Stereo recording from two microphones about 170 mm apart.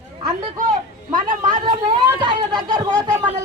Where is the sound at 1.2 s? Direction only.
50° right (ahead or behind).